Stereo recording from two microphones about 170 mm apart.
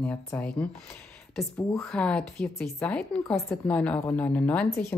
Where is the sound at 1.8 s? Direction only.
5° left (ahead or behind).